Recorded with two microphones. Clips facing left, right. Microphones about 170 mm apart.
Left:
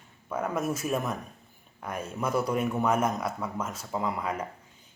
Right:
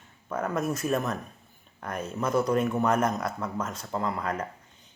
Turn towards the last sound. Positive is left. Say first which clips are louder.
# right 1 dB
turn(degrees=10)  # may be behind; listen again after turning